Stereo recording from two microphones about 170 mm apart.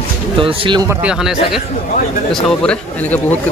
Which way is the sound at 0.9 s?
5° right (ahead or behind).